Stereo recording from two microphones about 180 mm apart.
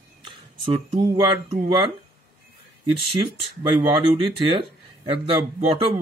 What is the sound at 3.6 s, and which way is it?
A man's voice, 25° right (ahead or behind).